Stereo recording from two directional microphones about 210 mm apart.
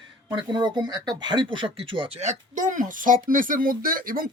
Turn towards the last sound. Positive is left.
turn(degrees=-45)  # may be behind; listen again after turning